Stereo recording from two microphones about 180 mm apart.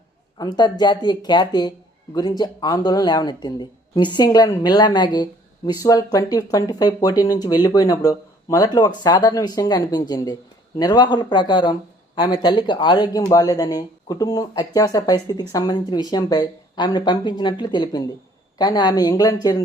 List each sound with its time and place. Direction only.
0.3 s speech: 25° left (ahead or behind)